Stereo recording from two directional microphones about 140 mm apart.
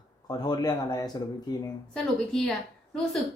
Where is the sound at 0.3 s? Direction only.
30° left (ahead or behind).